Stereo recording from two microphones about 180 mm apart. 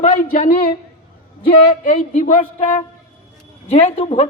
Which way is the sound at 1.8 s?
45° left (ahead or behind).